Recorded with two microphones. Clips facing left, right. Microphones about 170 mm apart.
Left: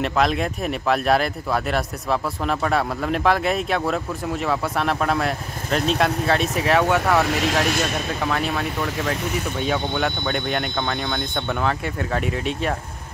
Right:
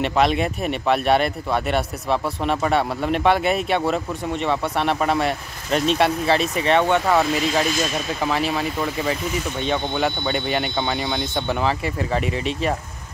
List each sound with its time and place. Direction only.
0.0 s speech: centre (ahead or behind)
7.6 s a man's voice: 65° left (ahead or behind)
8.2 s speech: centre (ahead or behind)